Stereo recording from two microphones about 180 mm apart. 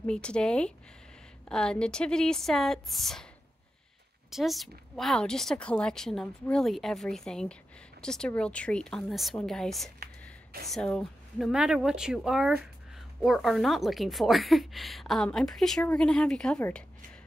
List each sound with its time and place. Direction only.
0.0 s a woman's voice: 5° left (ahead or behind)
4.3 s a woman's voice: centre (ahead or behind)